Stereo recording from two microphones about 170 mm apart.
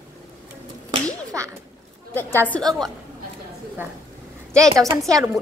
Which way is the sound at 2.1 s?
10° left (ahead or behind).